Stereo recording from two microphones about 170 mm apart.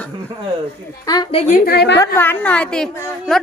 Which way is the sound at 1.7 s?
75° left (ahead or behind).